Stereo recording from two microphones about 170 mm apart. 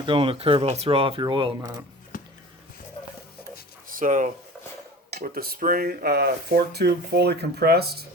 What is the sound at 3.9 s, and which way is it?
Speech, 50° right (ahead or behind).